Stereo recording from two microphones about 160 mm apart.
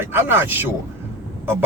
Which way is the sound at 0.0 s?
15° right (ahead or behind).